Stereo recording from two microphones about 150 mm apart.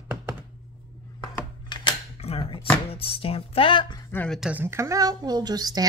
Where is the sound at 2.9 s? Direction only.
40° left (ahead or behind).